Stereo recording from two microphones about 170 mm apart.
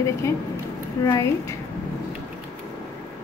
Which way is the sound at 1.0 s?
20° left (ahead or behind).